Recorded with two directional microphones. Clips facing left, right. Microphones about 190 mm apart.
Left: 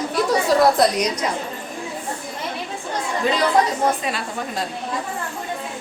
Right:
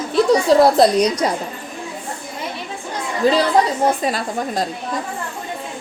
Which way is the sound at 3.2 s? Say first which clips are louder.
Right 4 dB; 35° right (ahead or behind).